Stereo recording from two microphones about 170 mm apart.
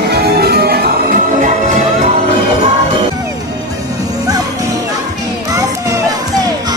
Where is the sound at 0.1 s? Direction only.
70° right (ahead or behind).